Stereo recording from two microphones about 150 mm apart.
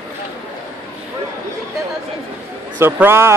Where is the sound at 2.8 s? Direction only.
15° right (ahead or behind).